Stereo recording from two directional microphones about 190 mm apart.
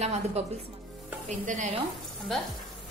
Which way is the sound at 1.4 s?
40° right (ahead or behind).